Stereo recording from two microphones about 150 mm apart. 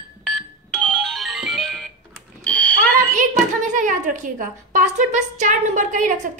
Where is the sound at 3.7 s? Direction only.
60° right (ahead or behind).